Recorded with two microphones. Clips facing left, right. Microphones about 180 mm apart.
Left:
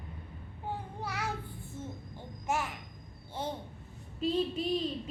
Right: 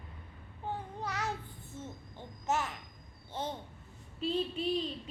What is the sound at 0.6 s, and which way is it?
Child singing, 10° left (ahead or behind).